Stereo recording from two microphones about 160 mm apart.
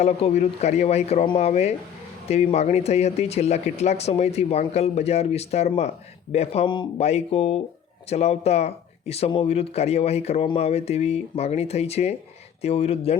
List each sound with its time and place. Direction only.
0.0 s speech: 40° left (ahead or behind)